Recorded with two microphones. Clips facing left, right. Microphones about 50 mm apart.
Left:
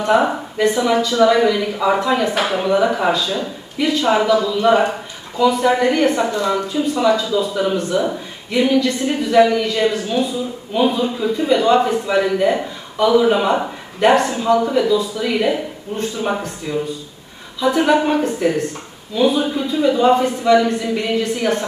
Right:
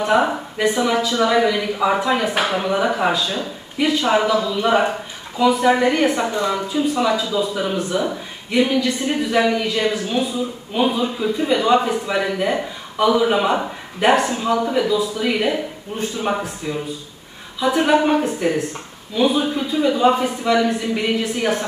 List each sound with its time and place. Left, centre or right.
0.0 s a man's voice: centre